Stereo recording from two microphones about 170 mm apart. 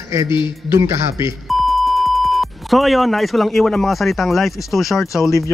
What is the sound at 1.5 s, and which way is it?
Speech, centre (ahead or behind).